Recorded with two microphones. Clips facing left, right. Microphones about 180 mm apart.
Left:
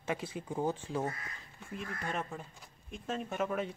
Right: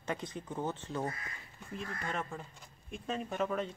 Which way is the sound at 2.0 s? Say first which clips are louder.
Left 2 dB; 10° left (ahead or behind).